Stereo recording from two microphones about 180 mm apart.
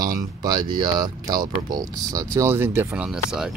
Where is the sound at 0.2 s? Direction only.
20° right (ahead or behind).